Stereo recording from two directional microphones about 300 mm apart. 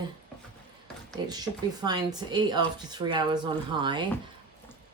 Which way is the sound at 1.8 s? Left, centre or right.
Centre.